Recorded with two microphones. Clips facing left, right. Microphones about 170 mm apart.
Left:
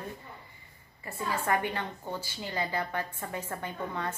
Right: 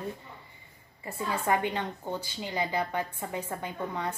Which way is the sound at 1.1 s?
20° right (ahead or behind).